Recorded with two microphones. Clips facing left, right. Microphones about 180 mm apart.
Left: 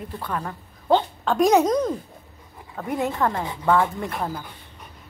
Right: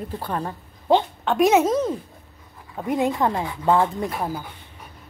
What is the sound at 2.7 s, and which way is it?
Speech, 20° right (ahead or behind).